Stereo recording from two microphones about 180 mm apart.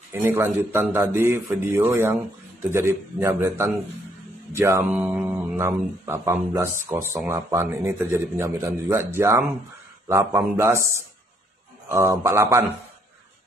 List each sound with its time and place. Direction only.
0.1 s speech: 10° right (ahead or behind)
11.9 s speech: 15° right (ahead or behind)